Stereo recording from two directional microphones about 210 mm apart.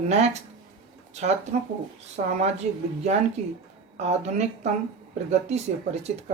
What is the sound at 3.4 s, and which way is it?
Speech, 35° right (ahead or behind).